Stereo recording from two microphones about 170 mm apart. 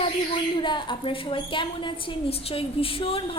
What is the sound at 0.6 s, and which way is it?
A woman's voice, 25° left (ahead or behind).